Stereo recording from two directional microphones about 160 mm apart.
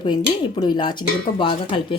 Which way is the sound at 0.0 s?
30° left (ahead or behind).